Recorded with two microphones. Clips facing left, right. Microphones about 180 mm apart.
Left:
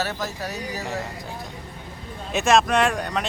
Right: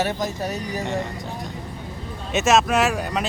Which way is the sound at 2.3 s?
Centre (ahead or behind).